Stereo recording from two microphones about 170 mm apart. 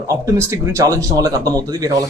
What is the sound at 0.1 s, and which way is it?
Speech, 15° right (ahead or behind).